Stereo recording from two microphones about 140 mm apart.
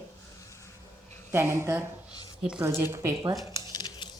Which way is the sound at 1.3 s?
15° right (ahead or behind).